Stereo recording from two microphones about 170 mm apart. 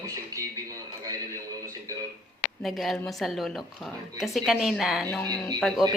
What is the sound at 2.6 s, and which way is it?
A woman's voice, centre (ahead or behind).